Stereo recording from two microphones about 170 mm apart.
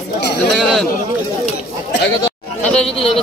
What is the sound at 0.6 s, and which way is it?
Speech, centre (ahead or behind).